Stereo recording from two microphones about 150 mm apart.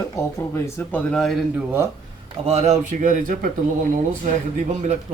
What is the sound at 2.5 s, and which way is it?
A man's voice, 55° right (ahead or behind).